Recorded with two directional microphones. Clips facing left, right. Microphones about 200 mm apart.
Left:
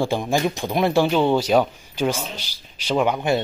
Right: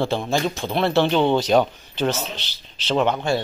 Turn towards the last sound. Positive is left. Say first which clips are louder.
# even
turn(degrees=10)  # may be behind; listen again after turning